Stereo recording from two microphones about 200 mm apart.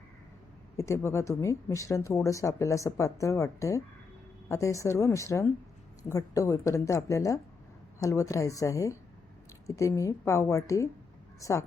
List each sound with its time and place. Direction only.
0.8 s a woman's voice: 15° left (ahead or behind)